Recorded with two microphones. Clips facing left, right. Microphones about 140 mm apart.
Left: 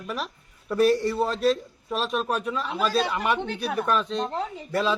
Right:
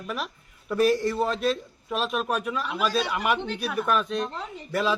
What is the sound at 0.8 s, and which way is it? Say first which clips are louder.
Speech: left 1 dB; 30° left (ahead or behind).